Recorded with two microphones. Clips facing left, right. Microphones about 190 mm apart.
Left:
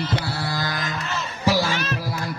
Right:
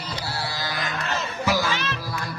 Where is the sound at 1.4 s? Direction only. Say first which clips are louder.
Left 4 dB; 35° left (ahead or behind).